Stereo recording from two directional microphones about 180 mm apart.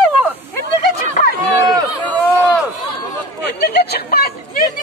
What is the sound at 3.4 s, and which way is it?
Chatter, 65° left (ahead or behind).